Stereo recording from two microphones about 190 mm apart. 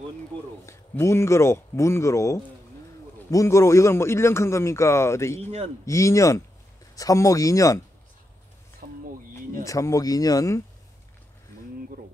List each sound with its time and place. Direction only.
0.7 s a man's voice: 15° left (ahead or behind)
8.8 s a sound: 45° right (ahead or behind)
9.7 s a man's voice: 15° left (ahead or behind)